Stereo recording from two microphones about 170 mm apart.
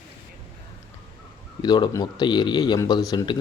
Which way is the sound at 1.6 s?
25° left (ahead or behind).